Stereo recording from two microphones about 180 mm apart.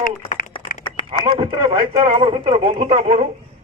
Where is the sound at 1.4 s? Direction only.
25° right (ahead or behind).